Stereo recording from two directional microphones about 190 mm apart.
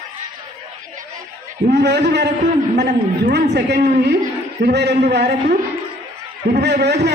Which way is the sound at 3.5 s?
60° right (ahead or behind).